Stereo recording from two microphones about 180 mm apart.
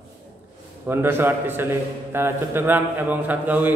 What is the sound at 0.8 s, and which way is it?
A man's voice, 10° right (ahead or behind).